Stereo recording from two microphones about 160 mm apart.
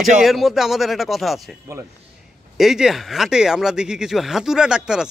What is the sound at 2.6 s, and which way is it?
Speech, 5° right (ahead or behind).